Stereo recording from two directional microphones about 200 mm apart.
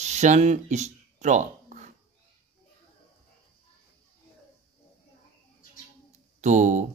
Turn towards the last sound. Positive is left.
turn(degrees=-35)  # may be behind; listen again after turning